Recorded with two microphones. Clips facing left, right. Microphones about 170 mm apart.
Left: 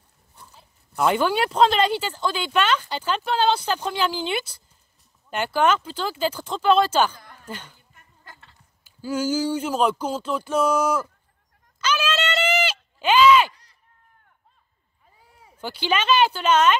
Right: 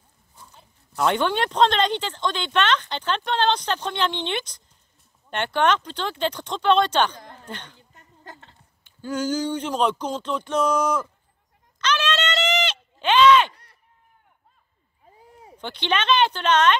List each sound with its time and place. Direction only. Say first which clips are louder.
0.5 s speech: even; 5° left (ahead or behind)
7.2 s a sound: right 5 dB; 30° right (ahead or behind)
7.4 s speech: left 3 dB; 5° left (ahead or behind)
8.2 s a sound: right 6 dB; 35° right (ahead or behind)
8.8 s speech: left 1 dB; 5° left (ahead or behind)
11.8 s bleat: even; 10° left (ahead or behind)
15.5 s speech: left 1 dB; 5° left (ahead or behind)